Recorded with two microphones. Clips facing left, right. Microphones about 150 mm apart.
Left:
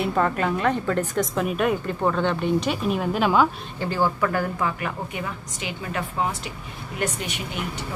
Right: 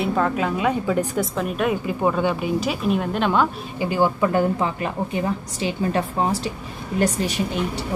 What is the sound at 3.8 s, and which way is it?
Speech, 15° right (ahead or behind).